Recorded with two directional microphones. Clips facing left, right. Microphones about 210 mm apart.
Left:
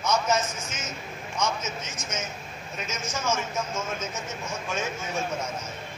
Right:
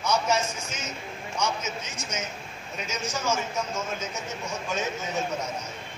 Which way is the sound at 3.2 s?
15° right (ahead or behind).